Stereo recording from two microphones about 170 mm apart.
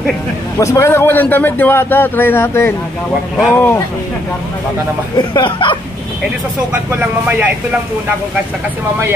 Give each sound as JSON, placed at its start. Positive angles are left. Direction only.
{"t": 0.6, "sound": "a man's voice", "side_deg": 15}
{"t": 5.1, "sound": "speech", "side_deg": 25}
{"t": 7.0, "sound": "speech", "side_deg": -10}